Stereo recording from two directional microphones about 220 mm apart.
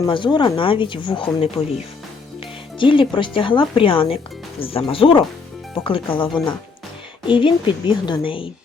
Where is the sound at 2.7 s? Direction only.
20° left (ahead or behind).